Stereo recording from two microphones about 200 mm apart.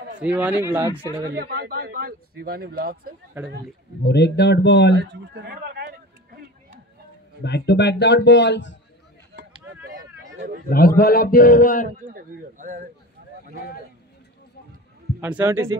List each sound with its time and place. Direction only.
0.2 s a man's voice: 5° right (ahead or behind)
1.3 s speech: 50° right (ahead or behind)
4.0 s speech: 55° left (ahead or behind)
5.3 s a sound: 55° right (ahead or behind)
7.4 s speech: 60° left (ahead or behind)
9.3 s a sound: 50° right (ahead or behind)
10.3 s a man's voice: 55° right (ahead or behind)
10.7 s a man's voice: 50° left (ahead or behind)
12.0 s speech: 40° right (ahead or behind)
15.1 s a man's voice: 10° right (ahead or behind)